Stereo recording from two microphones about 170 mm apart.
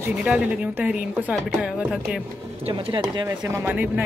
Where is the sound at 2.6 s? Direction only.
30° right (ahead or behind).